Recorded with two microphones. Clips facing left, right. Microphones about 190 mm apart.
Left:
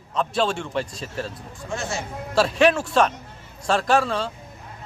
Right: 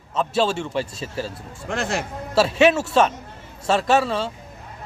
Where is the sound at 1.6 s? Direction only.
60° right (ahead or behind).